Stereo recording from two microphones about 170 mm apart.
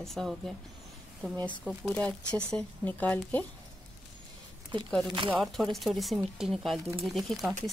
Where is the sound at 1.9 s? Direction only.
5° left (ahead or behind).